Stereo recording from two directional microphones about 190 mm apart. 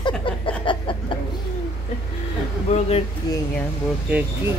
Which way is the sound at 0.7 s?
25° left (ahead or behind).